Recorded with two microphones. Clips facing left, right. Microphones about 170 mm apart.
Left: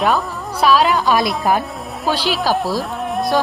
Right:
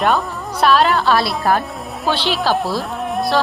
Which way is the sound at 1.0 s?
15° left (ahead or behind).